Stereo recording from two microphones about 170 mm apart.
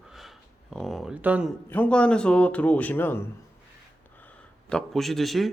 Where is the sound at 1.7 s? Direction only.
10° left (ahead or behind).